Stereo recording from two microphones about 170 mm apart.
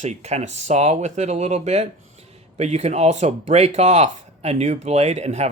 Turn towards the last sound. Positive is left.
turn(degrees=-40)  # may be behind; listen again after turning